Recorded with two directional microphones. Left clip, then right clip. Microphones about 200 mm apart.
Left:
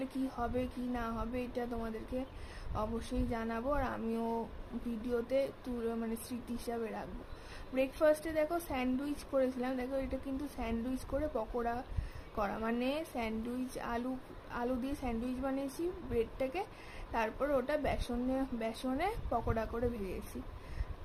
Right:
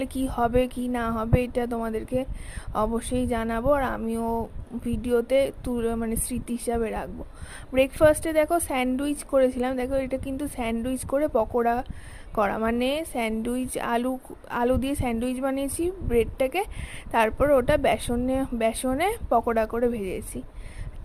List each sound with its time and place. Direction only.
0.0 s a woman's voice: 40° right (ahead or behind)